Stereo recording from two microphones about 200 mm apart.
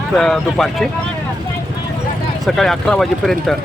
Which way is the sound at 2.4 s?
Centre (ahead or behind).